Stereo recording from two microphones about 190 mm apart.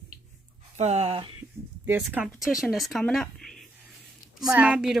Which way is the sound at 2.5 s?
Centre (ahead or behind).